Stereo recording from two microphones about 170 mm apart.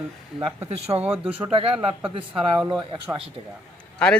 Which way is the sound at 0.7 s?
35° right (ahead or behind).